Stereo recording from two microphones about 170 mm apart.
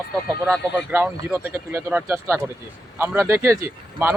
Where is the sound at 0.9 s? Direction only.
10° right (ahead or behind).